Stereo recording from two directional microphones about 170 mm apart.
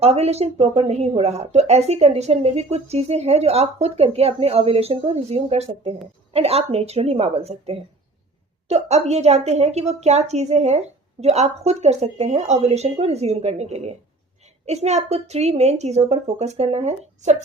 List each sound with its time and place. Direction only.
0.0 s a woman's voice: 40° right (ahead or behind)